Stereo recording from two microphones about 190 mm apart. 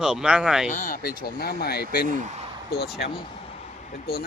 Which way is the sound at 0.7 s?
45° left (ahead or behind).